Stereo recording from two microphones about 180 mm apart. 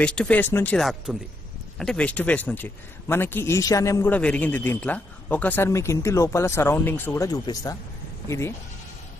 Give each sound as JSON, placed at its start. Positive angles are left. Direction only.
{"t": 0.0, "sound": "speech", "side_deg": 5}
{"t": 0.7, "sound": "speech", "side_deg": 0}